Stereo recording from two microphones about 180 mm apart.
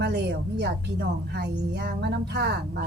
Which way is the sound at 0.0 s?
70° right (ahead or behind).